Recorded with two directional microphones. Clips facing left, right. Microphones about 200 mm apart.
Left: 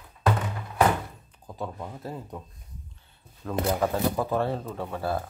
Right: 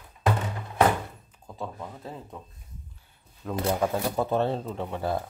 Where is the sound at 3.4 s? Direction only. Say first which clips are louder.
Even; 15° right (ahead or behind).